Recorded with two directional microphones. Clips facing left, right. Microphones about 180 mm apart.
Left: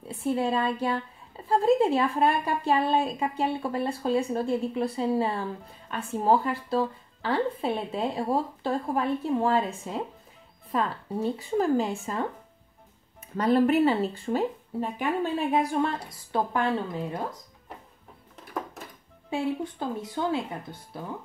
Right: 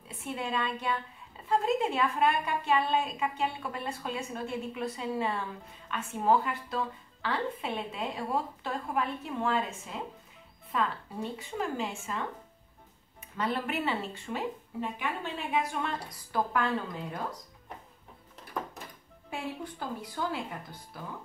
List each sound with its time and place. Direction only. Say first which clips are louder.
0.2 s a woman's voice: left 8 dB; 35° left (ahead or behind)
13.4 s a woman's voice: left 11 dB; 40° left (ahead or behind)
19.3 s speech: left 9 dB; 25° left (ahead or behind)